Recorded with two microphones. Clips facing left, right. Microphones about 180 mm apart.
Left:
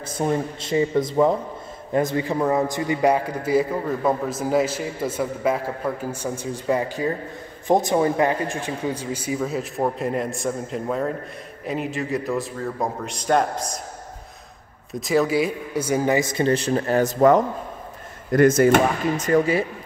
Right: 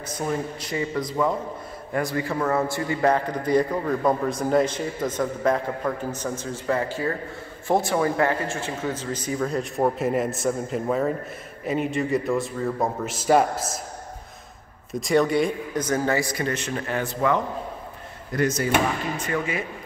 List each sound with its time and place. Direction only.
0.1 s a man's voice: 25° left (ahead or behind); by 13.7 s 5° right (ahead or behind)
14.9 s speech: centre (ahead or behind); by 19.6 s 35° left (ahead or behind)